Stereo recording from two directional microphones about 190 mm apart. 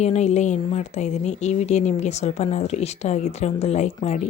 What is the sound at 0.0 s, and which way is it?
Speech, 35° left (ahead or behind).